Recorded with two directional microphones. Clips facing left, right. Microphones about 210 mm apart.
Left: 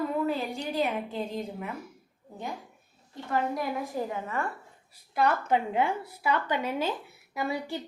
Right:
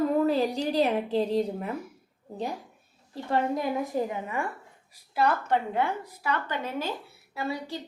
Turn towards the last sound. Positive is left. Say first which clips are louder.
# even
turn(degrees=15)  # may be behind; listen again after turning